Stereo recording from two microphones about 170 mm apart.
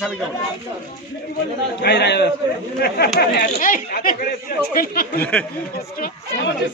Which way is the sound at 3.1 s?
60° left (ahead or behind).